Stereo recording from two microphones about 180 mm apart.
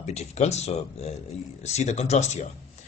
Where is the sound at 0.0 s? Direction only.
40° left (ahead or behind).